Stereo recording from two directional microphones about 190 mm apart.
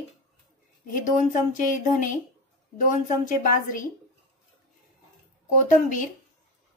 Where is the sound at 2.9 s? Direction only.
45° left (ahead or behind).